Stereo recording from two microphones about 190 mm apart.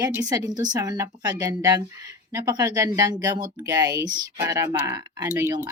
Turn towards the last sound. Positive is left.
turn(degrees=-20)  # may be behind; listen again after turning